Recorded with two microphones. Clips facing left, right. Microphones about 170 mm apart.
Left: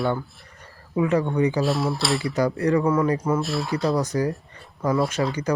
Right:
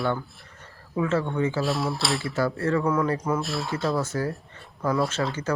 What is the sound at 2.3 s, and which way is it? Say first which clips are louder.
Speech: left 4 dB; 15° left (ahead or behind).